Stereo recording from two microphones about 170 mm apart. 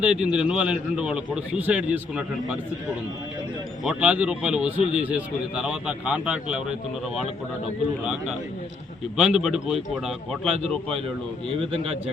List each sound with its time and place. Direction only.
0.0 s speech: 5° right (ahead or behind)
3.8 s speech: 5° right (ahead or behind)
9.1 s speech: 5° right (ahead or behind)